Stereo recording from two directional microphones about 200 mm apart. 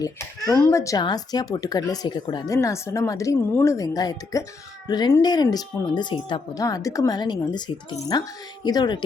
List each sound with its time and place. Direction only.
0.0 s speech: 15° left (ahead or behind)